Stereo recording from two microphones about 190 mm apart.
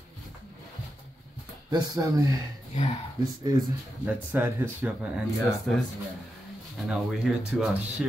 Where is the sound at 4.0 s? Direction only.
10° right (ahead or behind).